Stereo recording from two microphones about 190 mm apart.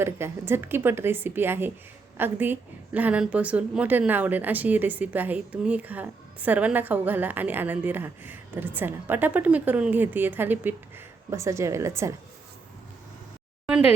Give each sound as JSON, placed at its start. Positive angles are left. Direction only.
{"t": 0.0, "sound": "a woman's voice", "side_deg": -10}